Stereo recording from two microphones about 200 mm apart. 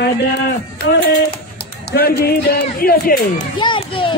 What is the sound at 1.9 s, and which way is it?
A man's voice, 50° left (ahead or behind).